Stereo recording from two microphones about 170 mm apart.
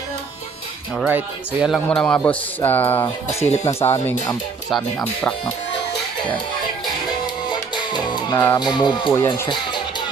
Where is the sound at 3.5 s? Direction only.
40° left (ahead or behind).